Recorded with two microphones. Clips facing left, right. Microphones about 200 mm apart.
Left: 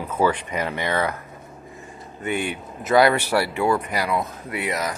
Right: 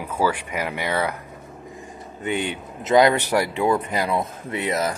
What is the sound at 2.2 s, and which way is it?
Speech, 20° right (ahead or behind).